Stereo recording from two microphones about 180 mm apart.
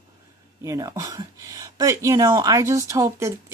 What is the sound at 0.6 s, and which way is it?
Speech, 20° right (ahead or behind).